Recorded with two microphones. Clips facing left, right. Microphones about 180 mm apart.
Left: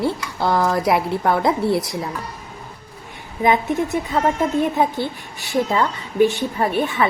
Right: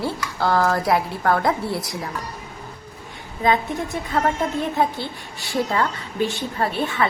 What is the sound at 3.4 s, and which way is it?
A woman's voice, 20° left (ahead or behind).